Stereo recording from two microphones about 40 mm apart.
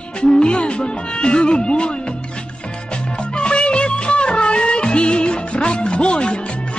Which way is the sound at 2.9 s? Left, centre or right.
Left.